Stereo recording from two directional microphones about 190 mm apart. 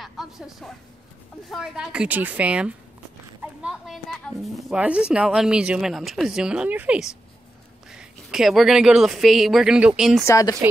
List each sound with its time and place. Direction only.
0.0 s a sound: centre (ahead or behind)
1.5 s a woman's voice: 5° right (ahead or behind)
10.2 s speech: 15° left (ahead or behind)